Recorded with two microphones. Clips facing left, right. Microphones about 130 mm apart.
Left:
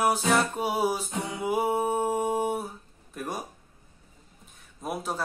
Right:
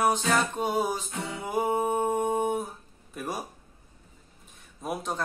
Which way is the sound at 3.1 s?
Centre (ahead or behind).